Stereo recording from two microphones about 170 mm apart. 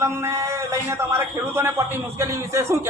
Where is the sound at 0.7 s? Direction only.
15° right (ahead or behind).